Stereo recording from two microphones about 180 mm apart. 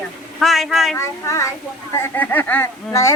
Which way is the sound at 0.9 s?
15° left (ahead or behind).